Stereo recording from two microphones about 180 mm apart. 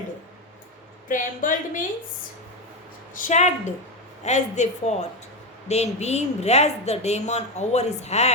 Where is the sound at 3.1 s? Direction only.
45° left (ahead or behind).